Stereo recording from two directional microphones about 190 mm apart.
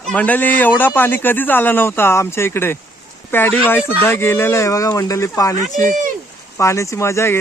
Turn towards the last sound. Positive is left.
turn(degrees=15)  # may be behind; listen again after turning